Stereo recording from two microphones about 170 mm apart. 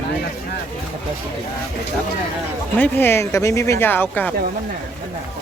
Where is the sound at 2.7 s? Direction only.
10° left (ahead or behind).